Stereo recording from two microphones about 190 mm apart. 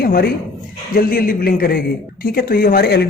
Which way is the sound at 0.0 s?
55° left (ahead or behind).